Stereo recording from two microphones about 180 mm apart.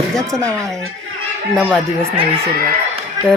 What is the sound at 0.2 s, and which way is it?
Speech, 15° right (ahead or behind).